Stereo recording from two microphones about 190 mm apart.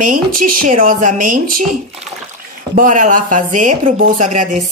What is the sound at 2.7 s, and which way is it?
A woman's voice, 40° right (ahead or behind).